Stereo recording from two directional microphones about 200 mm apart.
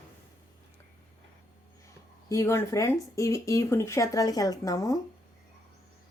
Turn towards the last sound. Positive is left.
turn(degrees=15)  # may be behind; listen again after turning